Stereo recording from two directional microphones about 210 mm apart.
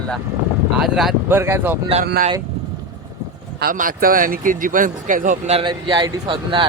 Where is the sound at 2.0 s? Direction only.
50° right (ahead or behind).